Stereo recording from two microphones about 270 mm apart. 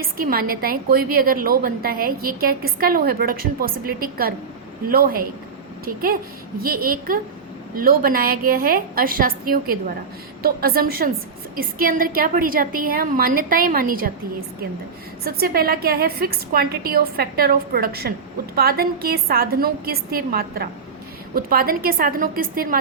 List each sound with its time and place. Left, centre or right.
0.0 s a woman's voice: right
15.2 s a woman's voice: right